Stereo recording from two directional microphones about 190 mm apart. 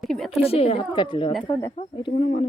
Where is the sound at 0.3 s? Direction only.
30° left (ahead or behind).